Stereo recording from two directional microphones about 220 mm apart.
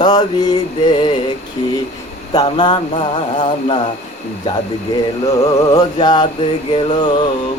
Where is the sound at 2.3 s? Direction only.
20° left (ahead or behind).